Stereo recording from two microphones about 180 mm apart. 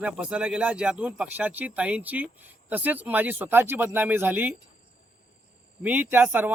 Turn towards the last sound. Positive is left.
turn(degrees=-10)  # may be behind; listen again after turning